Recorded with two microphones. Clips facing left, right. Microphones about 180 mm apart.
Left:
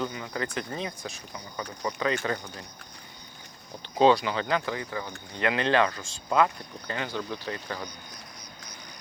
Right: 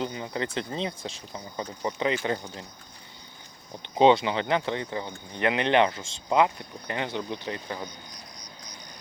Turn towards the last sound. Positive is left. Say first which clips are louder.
# right 1 dB
turn(degrees=-20)  # may be behind; listen again after turning